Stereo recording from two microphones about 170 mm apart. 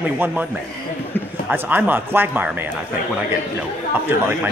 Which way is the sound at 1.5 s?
10° right (ahead or behind).